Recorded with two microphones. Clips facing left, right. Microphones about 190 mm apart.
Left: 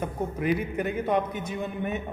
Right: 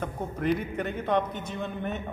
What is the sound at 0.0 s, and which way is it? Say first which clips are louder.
A man's voice: left 1 dB; 10° left (ahead or behind).